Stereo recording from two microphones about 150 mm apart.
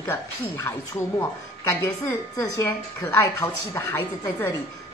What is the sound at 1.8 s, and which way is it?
A woman's voice, 20° left (ahead or behind).